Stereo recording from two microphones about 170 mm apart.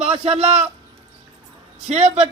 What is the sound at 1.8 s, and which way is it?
Speech, 40° right (ahead or behind).